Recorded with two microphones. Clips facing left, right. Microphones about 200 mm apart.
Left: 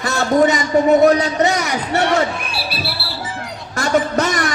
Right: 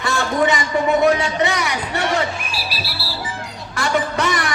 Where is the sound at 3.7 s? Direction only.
45° left (ahead or behind).